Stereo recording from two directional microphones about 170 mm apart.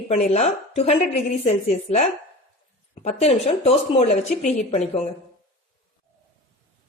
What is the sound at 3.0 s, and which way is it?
A woman's voice, 40° left (ahead or behind).